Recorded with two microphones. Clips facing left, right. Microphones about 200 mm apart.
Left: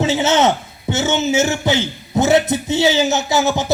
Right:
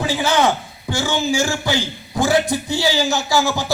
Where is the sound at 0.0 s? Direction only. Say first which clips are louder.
Left 3 dB; 25° left (ahead or behind).